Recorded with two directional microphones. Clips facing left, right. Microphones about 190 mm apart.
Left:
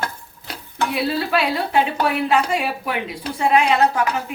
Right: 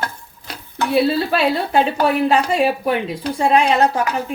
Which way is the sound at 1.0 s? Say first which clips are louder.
Right 3 dB; 30° right (ahead or behind).